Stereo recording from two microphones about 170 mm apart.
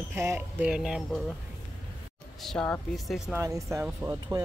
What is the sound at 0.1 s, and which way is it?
Speech, 15° right (ahead or behind).